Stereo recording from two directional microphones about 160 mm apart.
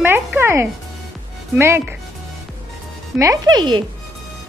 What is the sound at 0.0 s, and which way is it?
Music, 10° right (ahead or behind).